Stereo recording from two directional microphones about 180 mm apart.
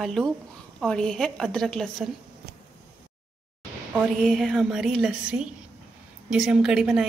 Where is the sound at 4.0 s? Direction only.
Centre (ahead or behind).